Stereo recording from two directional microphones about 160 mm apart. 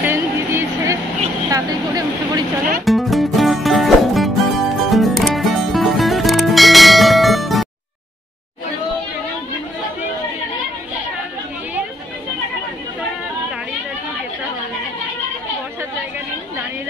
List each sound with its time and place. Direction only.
0.0 s a sound: 15° right (ahead or behind)
1.5 s vehicle: 25° right (ahead or behind)
2.8 s music: centre (ahead or behind)